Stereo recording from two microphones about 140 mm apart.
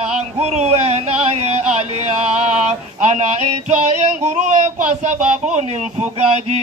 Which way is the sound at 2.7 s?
55° right (ahead or behind).